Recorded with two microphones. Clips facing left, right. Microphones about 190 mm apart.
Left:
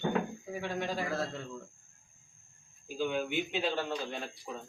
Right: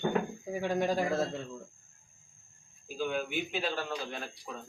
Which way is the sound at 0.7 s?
45° right (ahead or behind).